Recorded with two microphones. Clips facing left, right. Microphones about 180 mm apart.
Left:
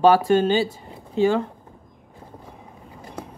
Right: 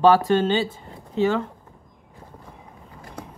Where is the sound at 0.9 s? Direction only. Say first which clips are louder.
Left 2 dB; 15° left (ahead or behind).